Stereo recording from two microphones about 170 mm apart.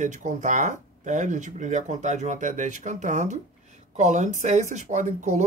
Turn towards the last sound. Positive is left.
turn(degrees=-45)  # may be behind; listen again after turning